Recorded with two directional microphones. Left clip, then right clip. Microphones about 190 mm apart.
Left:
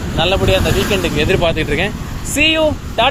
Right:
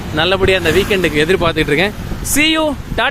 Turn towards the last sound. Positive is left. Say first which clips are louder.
# left 2 dB
turn(degrees=-55)  # may be behind; listen again after turning